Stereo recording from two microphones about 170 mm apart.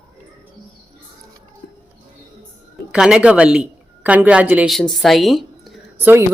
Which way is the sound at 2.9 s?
5° right (ahead or behind).